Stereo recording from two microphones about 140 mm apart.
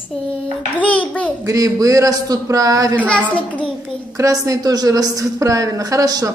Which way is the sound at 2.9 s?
10° left (ahead or behind).